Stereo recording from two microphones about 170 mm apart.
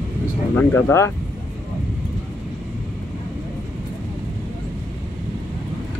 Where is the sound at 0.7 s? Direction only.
15° left (ahead or behind).